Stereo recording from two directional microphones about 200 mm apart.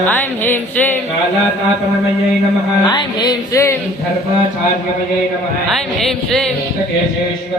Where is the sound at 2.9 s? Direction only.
20° left (ahead or behind).